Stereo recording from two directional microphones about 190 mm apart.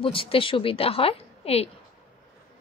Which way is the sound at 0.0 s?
30° left (ahead or behind).